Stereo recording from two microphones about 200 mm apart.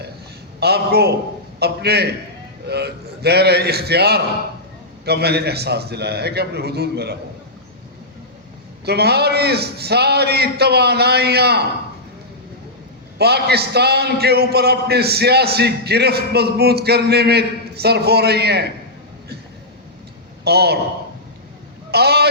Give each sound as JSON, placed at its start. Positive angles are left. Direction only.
{"t": 0.6, "sound": "a man's voice", "side_deg": -55}
{"t": 8.8, "sound": "a man's voice", "side_deg": -55}
{"t": 13.1, "sound": "a man's voice", "side_deg": -55}
{"t": 20.4, "sound": "a man's voice", "side_deg": -55}
{"t": 21.9, "sound": "a man's voice", "side_deg": -55}